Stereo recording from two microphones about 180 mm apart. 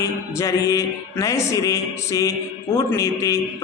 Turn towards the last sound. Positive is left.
turn(degrees=15)  # may be behind; listen again after turning